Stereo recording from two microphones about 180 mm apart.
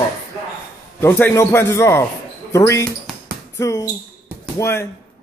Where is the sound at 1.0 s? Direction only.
10° left (ahead or behind).